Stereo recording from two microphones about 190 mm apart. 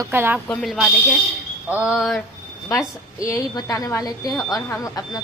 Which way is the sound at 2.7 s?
15° left (ahead or behind).